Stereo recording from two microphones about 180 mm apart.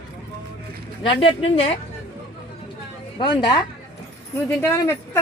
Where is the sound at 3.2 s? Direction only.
25° left (ahead or behind).